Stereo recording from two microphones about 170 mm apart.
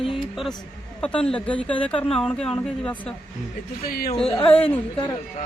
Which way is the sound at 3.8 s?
60° left (ahead or behind).